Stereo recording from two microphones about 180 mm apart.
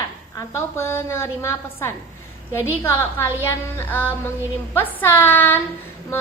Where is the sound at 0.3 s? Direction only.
15° left (ahead or behind).